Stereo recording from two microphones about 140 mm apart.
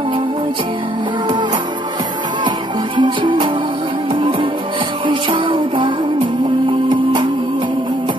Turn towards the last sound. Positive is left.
turn(degrees=-35)  # may be behind; listen again after turning